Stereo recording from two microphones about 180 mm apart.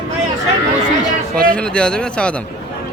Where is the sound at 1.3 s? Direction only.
5° left (ahead or behind).